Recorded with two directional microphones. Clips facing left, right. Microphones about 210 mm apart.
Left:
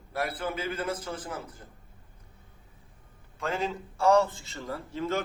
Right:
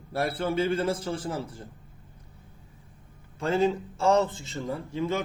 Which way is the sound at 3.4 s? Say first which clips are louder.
Right 7 dB; 30° right (ahead or behind).